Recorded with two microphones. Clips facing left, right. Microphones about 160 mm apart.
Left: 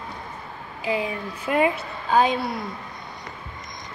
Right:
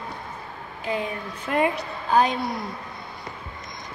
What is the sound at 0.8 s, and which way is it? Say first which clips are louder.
A woman's voice: left 2 dB; 5° left (ahead or behind).